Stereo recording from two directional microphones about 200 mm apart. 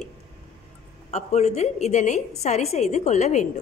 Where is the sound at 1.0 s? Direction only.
35° left (ahead or behind).